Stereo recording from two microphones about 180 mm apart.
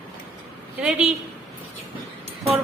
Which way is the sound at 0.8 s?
5° right (ahead or behind).